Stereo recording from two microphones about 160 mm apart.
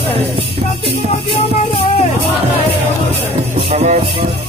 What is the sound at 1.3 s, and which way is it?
Music, 35° left (ahead or behind).